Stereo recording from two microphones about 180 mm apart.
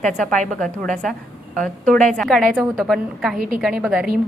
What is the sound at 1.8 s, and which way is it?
Speech, 45° right (ahead or behind).